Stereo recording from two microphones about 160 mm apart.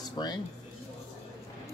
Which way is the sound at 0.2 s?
30° left (ahead or behind).